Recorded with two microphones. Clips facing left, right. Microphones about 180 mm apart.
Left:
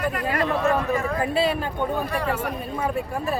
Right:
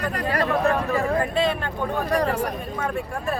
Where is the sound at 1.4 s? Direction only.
5° left (ahead or behind).